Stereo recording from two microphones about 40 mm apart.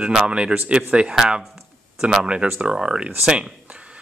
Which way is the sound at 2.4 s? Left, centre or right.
Right.